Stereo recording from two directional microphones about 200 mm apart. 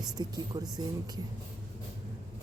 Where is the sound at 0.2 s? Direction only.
20° right (ahead or behind).